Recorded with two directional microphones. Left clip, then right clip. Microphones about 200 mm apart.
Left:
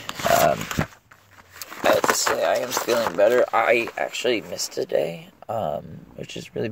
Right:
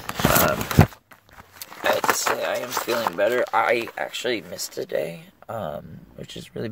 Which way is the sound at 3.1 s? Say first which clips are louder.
Left 4 dB; 5° left (ahead or behind).